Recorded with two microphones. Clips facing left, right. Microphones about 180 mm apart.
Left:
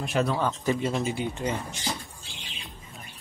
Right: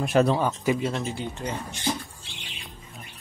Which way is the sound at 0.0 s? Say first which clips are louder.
Right 6 dB; 45° right (ahead or behind).